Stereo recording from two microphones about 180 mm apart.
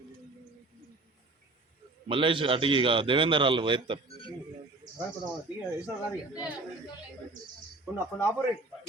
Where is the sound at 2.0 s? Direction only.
30° right (ahead or behind).